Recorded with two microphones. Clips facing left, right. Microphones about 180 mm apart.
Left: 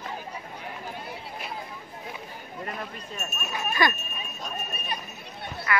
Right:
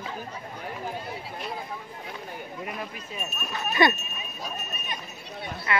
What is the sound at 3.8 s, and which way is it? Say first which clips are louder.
Speech: right 4 dB; 25° right (ahead or behind).